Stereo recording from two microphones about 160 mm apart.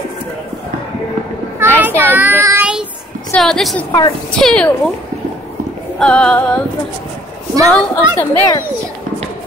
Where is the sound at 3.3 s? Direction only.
5° left (ahead or behind).